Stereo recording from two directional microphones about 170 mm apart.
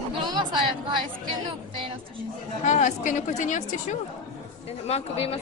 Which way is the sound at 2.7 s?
45° left (ahead or behind).